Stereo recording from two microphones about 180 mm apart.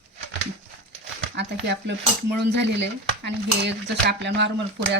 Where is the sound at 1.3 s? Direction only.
75° right (ahead or behind).